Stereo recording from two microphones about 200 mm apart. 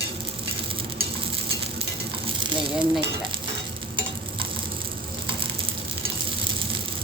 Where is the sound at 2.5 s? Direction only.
25° right (ahead or behind).